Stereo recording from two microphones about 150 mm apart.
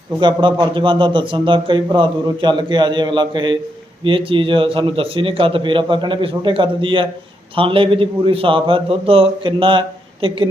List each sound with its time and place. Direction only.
0.2 s a man's voice: 30° right (ahead or behind)